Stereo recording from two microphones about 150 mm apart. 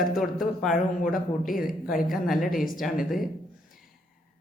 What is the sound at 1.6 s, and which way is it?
A woman's voice, centre (ahead or behind).